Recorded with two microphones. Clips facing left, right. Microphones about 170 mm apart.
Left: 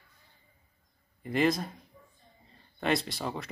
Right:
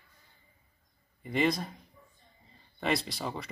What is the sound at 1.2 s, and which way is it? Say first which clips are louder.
Speech: left 2 dB; centre (ahead or behind).